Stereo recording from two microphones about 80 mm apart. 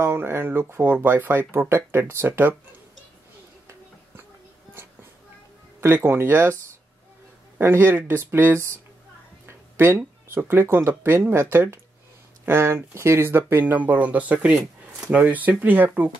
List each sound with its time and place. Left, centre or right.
0.0 s speech: right
6.0 s speech: right